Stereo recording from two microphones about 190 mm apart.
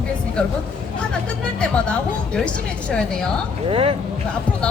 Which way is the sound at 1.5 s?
5° left (ahead or behind).